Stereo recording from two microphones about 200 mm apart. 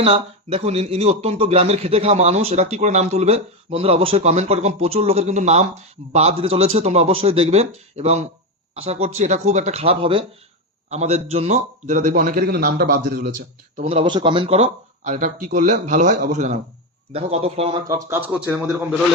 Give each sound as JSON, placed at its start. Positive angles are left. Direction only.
{"t": 0.0, "sound": "speech", "side_deg": -30}
{"t": 13.7, "sound": "speech", "side_deg": -30}
{"t": 17.8, "sound": "speech", "side_deg": -15}